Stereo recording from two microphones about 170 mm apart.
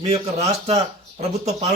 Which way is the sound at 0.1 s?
40° right (ahead or behind).